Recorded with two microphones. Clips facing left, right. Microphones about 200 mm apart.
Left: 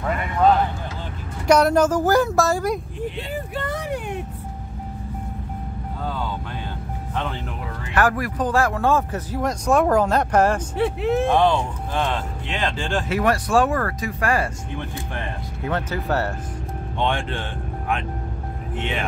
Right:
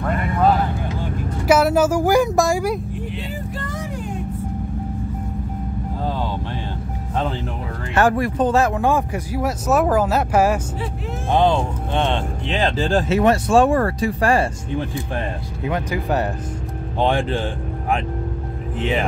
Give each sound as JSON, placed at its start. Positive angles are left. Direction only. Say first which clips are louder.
{"t": 0.0, "sound": "speech", "louder": "right 1 dB", "side_deg": -5}
{"t": 3.5, "sound": "speech", "louder": "left 2 dB", "side_deg": 65}
{"t": 7.9, "sound": "speech", "louder": "right 4 dB", "side_deg": -25}
{"t": 10.8, "sound": "speech", "louder": "left 8 dB", "side_deg": 65}
{"t": 11.3, "sound": "speech", "louder": "right 1 dB", "side_deg": -25}
{"t": 13.1, "sound": "speech", "louder": "right 3 dB", "side_deg": -25}
{"t": 15.7, "sound": "speech", "louder": "right 2 dB", "side_deg": -15}
{"t": 17.0, "sound": "speech", "louder": "right 5 dB", "side_deg": -35}